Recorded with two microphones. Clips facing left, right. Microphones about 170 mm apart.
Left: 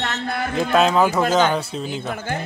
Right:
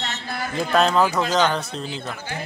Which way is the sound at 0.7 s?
5° left (ahead or behind).